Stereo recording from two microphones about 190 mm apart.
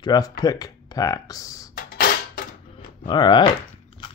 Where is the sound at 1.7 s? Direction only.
45° left (ahead or behind).